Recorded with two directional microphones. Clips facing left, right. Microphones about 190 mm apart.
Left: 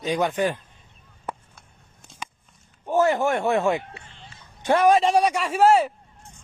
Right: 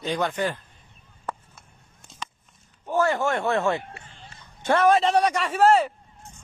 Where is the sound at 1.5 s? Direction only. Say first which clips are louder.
Even; centre (ahead or behind).